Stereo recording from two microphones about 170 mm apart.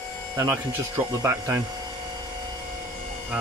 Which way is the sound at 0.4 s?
15° right (ahead or behind).